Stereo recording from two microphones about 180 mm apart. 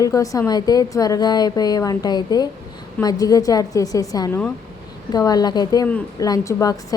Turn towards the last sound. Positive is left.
turn(degrees=20)  # may be behind; listen again after turning